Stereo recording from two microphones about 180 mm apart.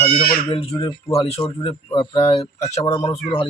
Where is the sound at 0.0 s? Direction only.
30° left (ahead or behind).